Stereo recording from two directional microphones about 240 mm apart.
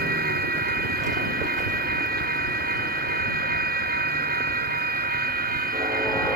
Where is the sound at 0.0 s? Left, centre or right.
Right.